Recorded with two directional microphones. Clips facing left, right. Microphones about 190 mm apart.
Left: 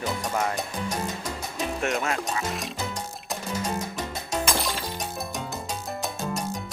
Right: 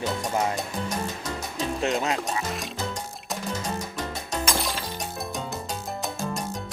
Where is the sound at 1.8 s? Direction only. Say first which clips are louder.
Right 2 dB; 30° right (ahead or behind).